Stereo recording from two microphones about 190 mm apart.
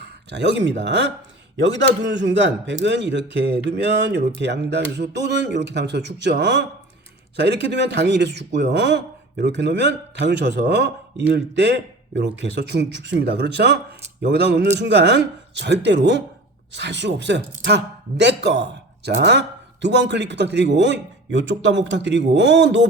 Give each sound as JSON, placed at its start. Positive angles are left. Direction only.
{"t": 0.0, "sound": "a man's voice", "side_deg": -65}